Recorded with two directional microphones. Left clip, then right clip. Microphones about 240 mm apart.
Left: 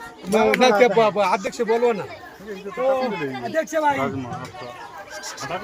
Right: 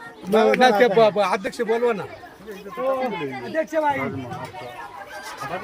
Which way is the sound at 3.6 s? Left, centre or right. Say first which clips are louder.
Left 1 dB; left.